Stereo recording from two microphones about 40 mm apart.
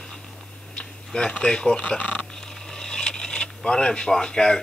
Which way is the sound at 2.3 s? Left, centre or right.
Centre.